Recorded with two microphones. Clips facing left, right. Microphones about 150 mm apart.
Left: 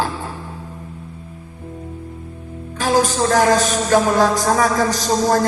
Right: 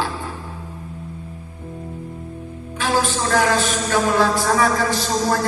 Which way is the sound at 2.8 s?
40° left (ahead or behind).